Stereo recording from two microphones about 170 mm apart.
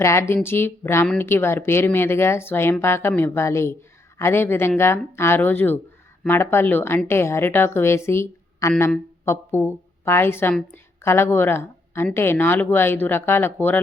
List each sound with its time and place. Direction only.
0.0 s a woman's voice: 15° left (ahead or behind)